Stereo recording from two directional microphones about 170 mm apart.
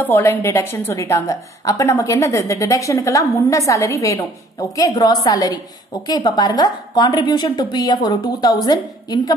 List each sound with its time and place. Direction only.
0.0 s a woman's voice: 10° left (ahead or behind)